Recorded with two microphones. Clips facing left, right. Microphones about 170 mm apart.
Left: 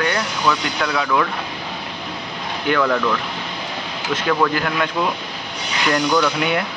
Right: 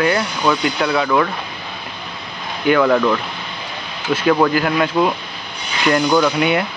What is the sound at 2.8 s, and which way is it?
Speech, 25° right (ahead or behind).